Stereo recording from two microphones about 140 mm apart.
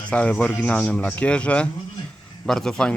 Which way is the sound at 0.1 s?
10° left (ahead or behind).